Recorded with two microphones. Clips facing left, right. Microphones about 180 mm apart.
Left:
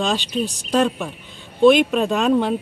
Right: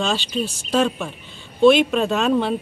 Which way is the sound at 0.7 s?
Centre (ahead or behind).